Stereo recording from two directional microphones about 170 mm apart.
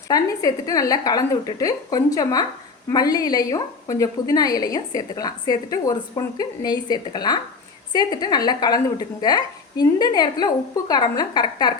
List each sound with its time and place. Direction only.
0.1 s a woman's voice: 20° left (ahead or behind)